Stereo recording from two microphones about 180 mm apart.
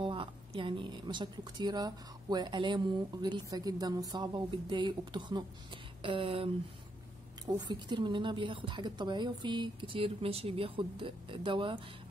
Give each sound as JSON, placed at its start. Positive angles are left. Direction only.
{"t": 0.0, "sound": "a woman's voice", "side_deg": -30}